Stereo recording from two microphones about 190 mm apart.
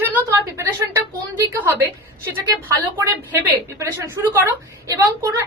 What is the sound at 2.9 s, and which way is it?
A woman's voice, 15° right (ahead or behind).